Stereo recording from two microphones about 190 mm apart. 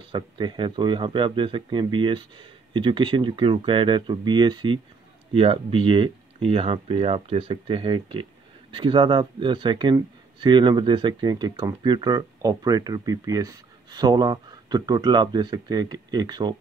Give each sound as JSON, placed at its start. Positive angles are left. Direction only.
{"t": 0.1, "sound": "speech", "side_deg": -25}